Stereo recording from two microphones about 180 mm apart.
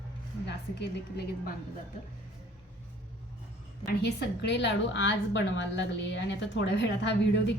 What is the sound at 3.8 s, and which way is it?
A woman's voice, 65° left (ahead or behind).